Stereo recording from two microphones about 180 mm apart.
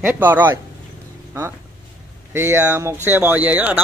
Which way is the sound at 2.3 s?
15° right (ahead or behind).